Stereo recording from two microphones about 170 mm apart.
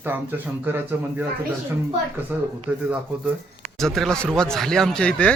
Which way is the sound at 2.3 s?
10° right (ahead or behind).